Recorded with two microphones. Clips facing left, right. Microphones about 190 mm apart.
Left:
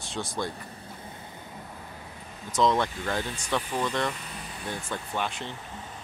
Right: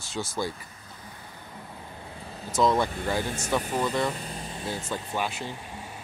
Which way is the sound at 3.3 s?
45° right (ahead or behind).